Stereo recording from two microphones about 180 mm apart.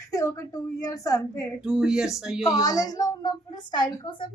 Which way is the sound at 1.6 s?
5° right (ahead or behind).